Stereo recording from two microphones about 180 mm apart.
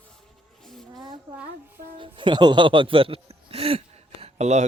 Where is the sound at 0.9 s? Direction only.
25° right (ahead or behind).